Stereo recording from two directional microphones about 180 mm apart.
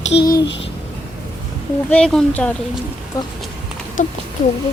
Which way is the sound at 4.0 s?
45° left (ahead or behind).